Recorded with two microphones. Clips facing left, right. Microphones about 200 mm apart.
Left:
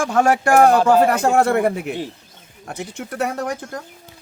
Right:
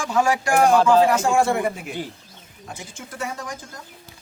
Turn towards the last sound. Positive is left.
turn(degrees=65)  # may be behind; listen again after turning